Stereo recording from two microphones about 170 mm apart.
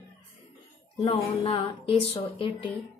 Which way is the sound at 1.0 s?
35° left (ahead or behind).